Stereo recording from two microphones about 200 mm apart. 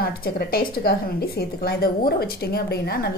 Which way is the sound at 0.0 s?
50° left (ahead or behind).